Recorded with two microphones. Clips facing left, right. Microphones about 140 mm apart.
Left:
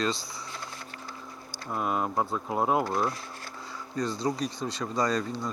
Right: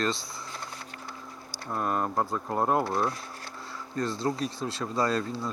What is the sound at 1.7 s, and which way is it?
Speech, 5° left (ahead or behind).